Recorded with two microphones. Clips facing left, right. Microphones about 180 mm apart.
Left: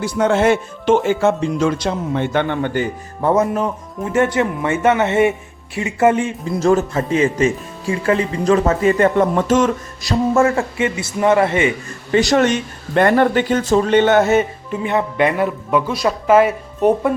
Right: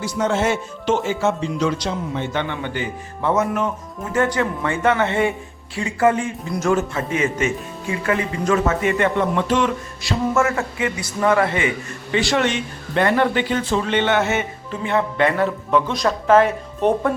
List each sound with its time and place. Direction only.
0.0 s a man's voice: 55° left (ahead or behind); by 11.7 s 25° left (ahead or behind)
12.1 s a man's voice: 40° left (ahead or behind)
14.7 s speech: 15° left (ahead or behind)